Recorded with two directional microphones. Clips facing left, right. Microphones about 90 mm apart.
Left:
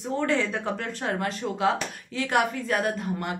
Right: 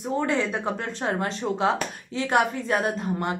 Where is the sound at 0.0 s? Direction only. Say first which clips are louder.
Right 1 dB; 15° right (ahead or behind).